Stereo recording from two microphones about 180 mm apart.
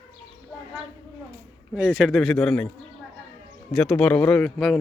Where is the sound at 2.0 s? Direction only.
Centre (ahead or behind).